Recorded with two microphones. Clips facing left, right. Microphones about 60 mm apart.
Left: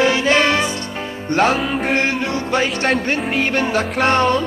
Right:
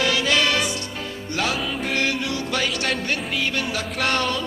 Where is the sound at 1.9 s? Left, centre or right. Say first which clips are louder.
Left 4 dB; left.